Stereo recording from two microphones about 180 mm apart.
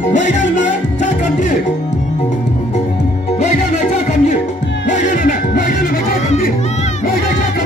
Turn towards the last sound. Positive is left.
turn(degrees=50)  # may be behind; listen again after turning